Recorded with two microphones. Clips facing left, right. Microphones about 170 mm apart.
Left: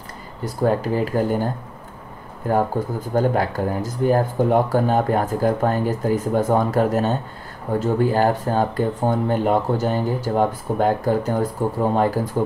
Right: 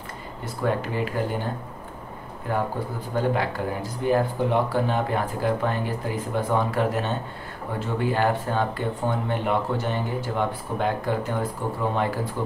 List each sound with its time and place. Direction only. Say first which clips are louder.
0.6 s speech: left 6 dB; 40° left (ahead or behind)